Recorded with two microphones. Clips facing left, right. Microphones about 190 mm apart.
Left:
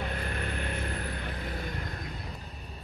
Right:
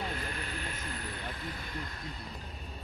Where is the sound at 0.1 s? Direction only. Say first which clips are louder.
Left 4 dB; 50° left (ahead or behind).